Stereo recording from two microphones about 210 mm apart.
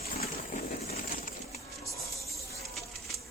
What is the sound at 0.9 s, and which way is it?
Pigeon, 40° left (ahead or behind).